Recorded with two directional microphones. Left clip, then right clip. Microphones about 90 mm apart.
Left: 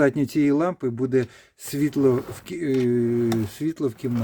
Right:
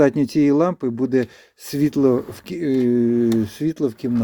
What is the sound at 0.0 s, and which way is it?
Speech, 30° right (ahead or behind).